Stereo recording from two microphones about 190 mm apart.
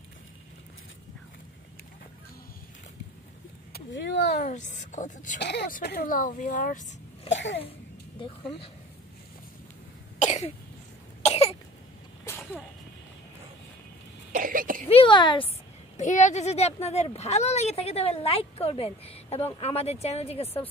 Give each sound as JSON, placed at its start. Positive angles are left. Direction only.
{"t": 3.7, "sound": "vehicle", "side_deg": 65}
{"t": 4.4, "sound": "speech", "side_deg": 40}
{"t": 5.4, "sound": "speech", "side_deg": 65}
{"t": 5.7, "sound": "speech", "side_deg": 50}
{"t": 7.2, "sound": "speech", "side_deg": 70}
{"t": 8.2, "sound": "speech", "side_deg": 30}
{"t": 10.1, "sound": "cough", "side_deg": 35}
{"t": 12.3, "sound": "sneeze", "side_deg": 15}
{"t": 14.3, "sound": "throat clearing", "side_deg": -45}
{"t": 14.9, "sound": "a sound", "side_deg": 25}
{"t": 16.0, "sound": "speech", "side_deg": 40}